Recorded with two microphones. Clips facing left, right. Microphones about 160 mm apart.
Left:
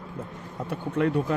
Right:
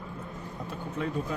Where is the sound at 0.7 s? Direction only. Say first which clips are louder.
Left 9 dB; 75° left (ahead or behind).